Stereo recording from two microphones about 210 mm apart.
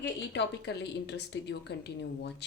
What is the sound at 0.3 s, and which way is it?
A woman's voice, 55° left (ahead or behind).